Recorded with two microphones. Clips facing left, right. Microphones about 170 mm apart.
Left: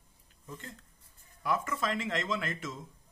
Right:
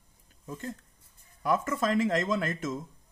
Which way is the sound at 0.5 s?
45° right (ahead or behind).